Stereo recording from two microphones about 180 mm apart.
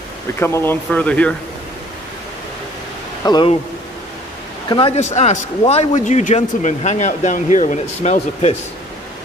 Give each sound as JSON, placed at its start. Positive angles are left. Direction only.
{"t": 0.4, "sound": "speech", "side_deg": 15}
{"t": 3.3, "sound": "speech", "side_deg": 25}
{"t": 4.6, "sound": "a man's voice", "side_deg": 30}